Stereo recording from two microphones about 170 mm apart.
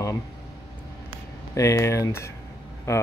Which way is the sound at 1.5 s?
20° left (ahead or behind).